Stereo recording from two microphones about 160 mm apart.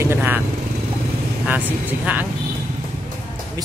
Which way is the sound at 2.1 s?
10° right (ahead or behind).